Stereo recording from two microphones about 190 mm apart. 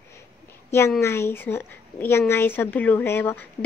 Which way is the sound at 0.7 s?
15° left (ahead or behind).